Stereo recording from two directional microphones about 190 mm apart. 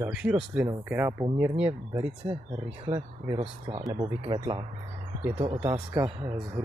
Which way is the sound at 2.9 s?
30° right (ahead or behind).